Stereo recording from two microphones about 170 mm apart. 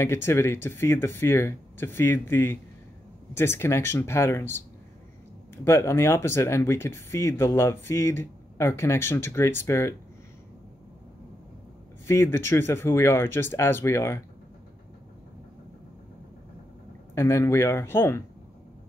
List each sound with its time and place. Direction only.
0.0 s speech: 15° left (ahead or behind)
12.1 s speech: 15° left (ahead or behind)
17.1 s speech: 15° left (ahead or behind)